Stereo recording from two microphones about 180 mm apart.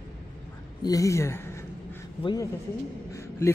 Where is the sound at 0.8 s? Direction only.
20° left (ahead or behind).